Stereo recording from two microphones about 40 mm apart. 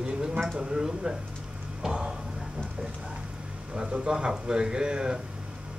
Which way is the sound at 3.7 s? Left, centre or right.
Right.